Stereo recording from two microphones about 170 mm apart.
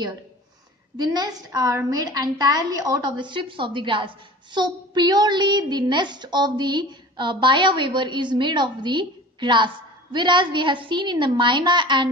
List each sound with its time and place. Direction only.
0.9 s a woman's voice: 25° right (ahead or behind)